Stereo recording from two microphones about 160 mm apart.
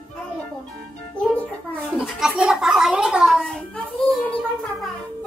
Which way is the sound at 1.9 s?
5° right (ahead or behind).